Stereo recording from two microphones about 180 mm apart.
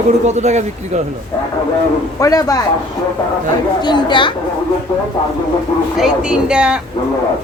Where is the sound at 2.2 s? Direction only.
20° left (ahead or behind).